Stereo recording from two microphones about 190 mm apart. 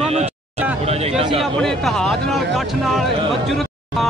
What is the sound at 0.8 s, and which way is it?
Speech, 35° right (ahead or behind).